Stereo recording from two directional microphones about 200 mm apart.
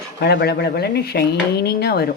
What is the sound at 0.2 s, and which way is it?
Speech, 55° left (ahead or behind).